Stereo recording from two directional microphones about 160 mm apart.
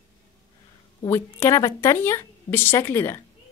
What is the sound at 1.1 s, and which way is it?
A woman's voice, 15° left (ahead or behind).